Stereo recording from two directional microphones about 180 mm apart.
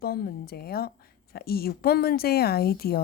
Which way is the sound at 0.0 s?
60° left (ahead or behind).